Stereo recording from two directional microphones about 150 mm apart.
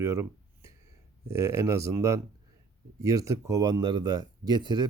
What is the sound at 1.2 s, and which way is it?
Speech, 20° right (ahead or behind).